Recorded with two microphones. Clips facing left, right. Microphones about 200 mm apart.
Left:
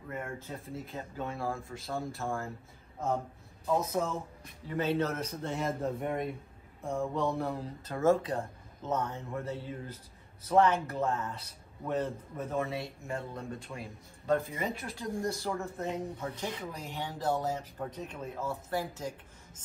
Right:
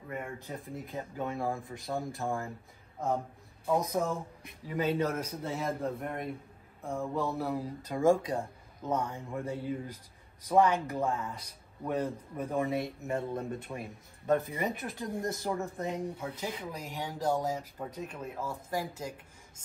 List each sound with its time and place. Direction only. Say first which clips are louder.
0.7 s speech: right 1 dB; 15° right (ahead or behind)
3.7 s speech: right 1 dB; 15° right (ahead or behind)